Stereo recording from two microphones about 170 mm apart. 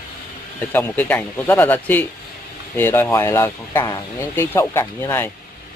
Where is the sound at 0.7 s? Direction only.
10° left (ahead or behind).